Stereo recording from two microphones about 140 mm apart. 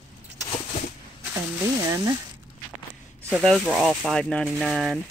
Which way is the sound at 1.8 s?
25° right (ahead or behind).